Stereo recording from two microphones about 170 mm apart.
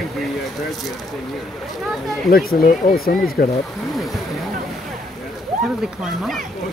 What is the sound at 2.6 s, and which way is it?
Speech, 55° left (ahead or behind).